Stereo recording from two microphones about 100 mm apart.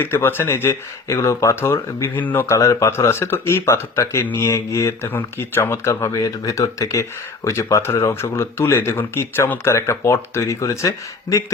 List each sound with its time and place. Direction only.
0.0 s speech: 20° left (ahead or behind)